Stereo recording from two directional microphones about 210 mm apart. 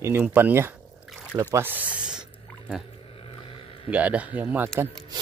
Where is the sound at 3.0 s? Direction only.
25° left (ahead or behind).